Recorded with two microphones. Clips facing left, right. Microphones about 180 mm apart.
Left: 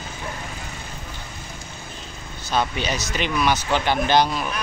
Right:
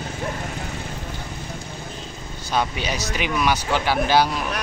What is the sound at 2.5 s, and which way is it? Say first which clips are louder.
Speech: left 1 dB; 10° right (ahead or behind).